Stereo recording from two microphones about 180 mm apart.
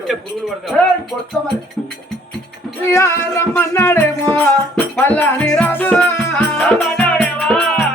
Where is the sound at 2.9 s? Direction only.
15° left (ahead or behind).